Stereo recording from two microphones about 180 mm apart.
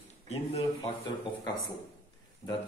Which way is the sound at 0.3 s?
35° left (ahead or behind).